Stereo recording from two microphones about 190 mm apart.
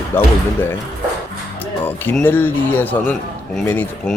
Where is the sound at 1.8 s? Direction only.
10° left (ahead or behind).